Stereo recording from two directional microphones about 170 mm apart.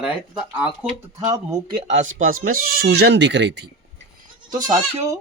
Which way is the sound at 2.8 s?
70° right (ahead or behind).